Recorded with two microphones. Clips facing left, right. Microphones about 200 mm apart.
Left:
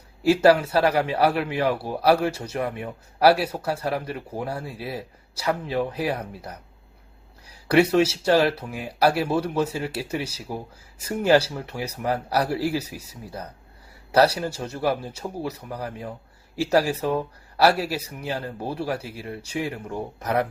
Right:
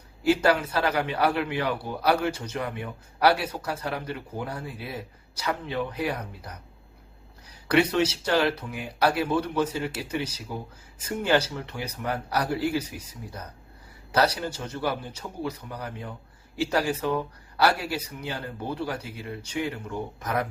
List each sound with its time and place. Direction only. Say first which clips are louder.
0.3 s a man's voice: left 5 dB; 30° left (ahead or behind)
7.7 s a man's voice: left 4 dB; 30° left (ahead or behind)
14.2 s a man's voice: left 5 dB; 30° left (ahead or behind)